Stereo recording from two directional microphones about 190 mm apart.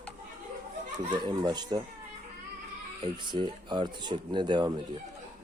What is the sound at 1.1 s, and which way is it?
Speech, 25° right (ahead or behind).